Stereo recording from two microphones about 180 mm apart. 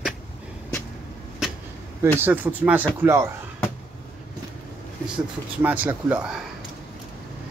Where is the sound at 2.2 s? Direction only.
10° right (ahead or behind).